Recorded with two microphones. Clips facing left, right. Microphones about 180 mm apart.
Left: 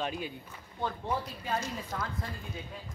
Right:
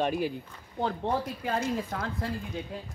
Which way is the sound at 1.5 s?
60° right (ahead or behind).